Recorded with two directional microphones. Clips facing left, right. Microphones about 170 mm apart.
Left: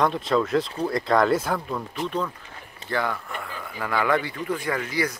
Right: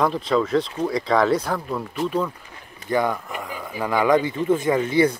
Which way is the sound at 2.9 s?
15° right (ahead or behind).